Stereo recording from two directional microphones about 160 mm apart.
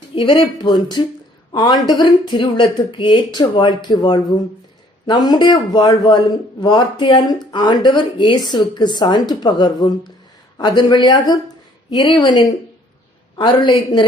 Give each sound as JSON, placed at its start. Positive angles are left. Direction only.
{"t": 0.2, "sound": "a man's voice", "side_deg": 30}